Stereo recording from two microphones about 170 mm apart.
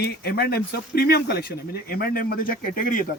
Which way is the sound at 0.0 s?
75° left (ahead or behind).